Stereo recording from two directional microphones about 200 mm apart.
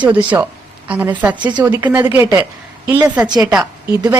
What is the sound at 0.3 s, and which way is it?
A woman's voice, 15° right (ahead or behind).